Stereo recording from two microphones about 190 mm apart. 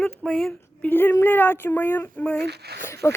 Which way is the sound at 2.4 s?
60° right (ahead or behind).